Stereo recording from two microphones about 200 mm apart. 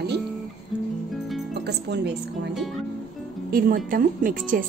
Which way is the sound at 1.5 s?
55° right (ahead or behind).